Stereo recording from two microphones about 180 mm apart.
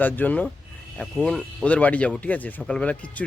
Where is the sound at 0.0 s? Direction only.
10° left (ahead or behind).